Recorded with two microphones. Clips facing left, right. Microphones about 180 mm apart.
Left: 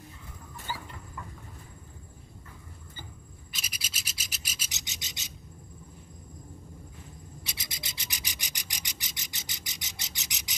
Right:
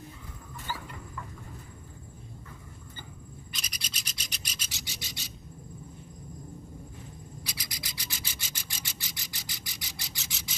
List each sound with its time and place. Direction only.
0.7 s a sound: 15° left (ahead or behind)
3.5 s rub: 5° left (ahead or behind)
4.6 s rub: 20° left (ahead or behind)
7.4 s rub: 25° left (ahead or behind)